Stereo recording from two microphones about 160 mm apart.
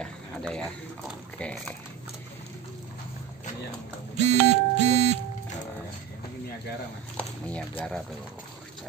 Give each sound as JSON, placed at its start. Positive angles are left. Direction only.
{"t": 0.0, "sound": "speech", "side_deg": 5}
{"t": 4.2, "sound": "music", "side_deg": -45}
{"t": 7.2, "sound": "speech", "side_deg": 10}